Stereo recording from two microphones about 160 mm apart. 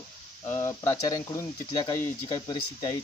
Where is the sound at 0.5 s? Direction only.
15° left (ahead or behind).